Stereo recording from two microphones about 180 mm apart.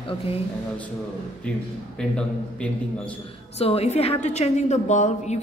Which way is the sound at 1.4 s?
5° left (ahead or behind).